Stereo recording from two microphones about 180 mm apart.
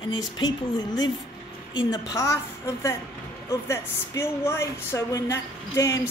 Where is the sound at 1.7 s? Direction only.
20° left (ahead or behind).